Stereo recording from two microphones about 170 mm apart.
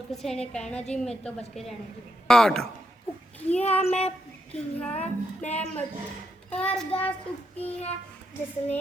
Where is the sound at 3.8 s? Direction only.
40° left (ahead or behind).